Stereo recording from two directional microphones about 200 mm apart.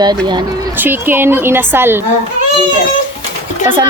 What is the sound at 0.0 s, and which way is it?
Speech, 20° right (ahead or behind).